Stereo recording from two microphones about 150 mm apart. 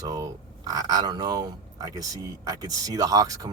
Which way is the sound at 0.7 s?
25° right (ahead or behind).